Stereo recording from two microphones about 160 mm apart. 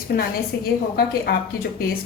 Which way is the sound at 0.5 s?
90° left.